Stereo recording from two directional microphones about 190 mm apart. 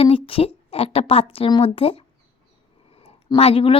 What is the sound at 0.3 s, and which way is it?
A woman's voice, 30° left (ahead or behind).